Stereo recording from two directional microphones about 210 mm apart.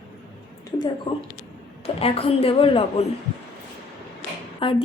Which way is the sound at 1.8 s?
30° left (ahead or behind).